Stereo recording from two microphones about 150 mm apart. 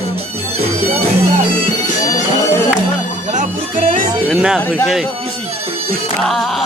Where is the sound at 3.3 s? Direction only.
65° right (ahead or behind).